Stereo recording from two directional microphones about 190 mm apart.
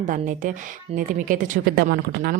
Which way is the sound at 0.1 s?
40° right (ahead or behind).